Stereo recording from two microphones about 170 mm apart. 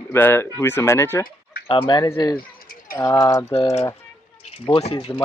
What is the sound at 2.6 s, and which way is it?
Bird, 55° left (ahead or behind).